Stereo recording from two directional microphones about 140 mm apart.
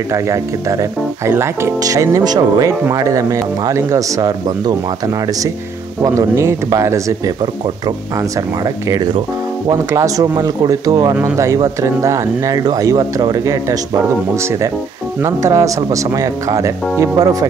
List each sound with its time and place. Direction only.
0.1 s speech: 20° right (ahead or behind)